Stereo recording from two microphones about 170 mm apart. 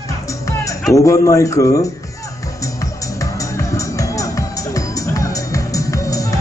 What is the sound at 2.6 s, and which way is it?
Music, 20° left (ahead or behind).